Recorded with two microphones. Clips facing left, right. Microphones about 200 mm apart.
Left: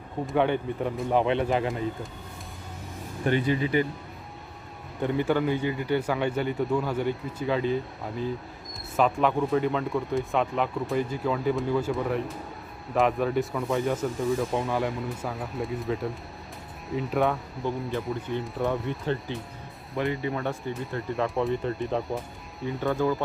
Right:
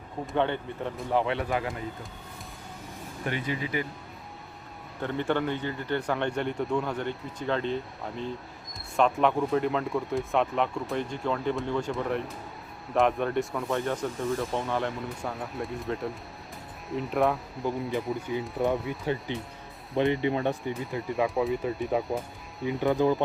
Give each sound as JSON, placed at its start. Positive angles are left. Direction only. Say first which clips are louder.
{"t": 0.3, "sound": "speech", "louder": "left 3 dB", "side_deg": 15}
{"t": 3.2, "sound": "speech", "louder": "left 7 dB", "side_deg": 35}
{"t": 5.0, "sound": "speech", "louder": "left 3 dB", "side_deg": 10}
{"t": 20.0, "sound": "speech", "louder": "right 3 dB", "side_deg": -20}
{"t": 21.2, "sound": "speech", "louder": "even", "side_deg": 0}
{"t": 23.0, "sound": "speech", "louder": "right 1 dB", "side_deg": -20}